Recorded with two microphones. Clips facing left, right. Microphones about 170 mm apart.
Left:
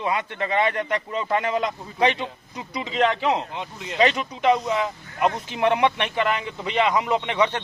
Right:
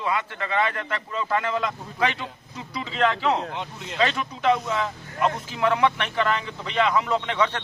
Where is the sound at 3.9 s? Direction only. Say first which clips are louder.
Left 3 dB; 20° left (ahead or behind).